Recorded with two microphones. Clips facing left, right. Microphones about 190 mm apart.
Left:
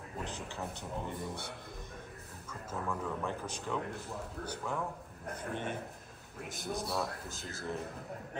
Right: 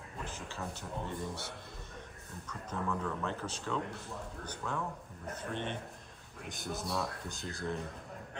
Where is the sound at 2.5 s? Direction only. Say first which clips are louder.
Right 1 dB; 10° left (ahead or behind).